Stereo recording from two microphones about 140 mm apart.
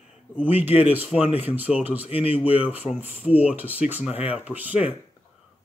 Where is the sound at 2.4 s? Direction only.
10° right (ahead or behind).